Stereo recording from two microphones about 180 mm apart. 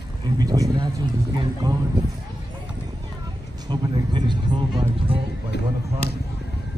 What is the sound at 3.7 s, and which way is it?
Speech, 25° right (ahead or behind).